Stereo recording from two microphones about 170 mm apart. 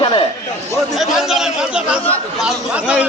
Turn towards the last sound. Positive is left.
turn(degrees=-5)  # may be behind; listen again after turning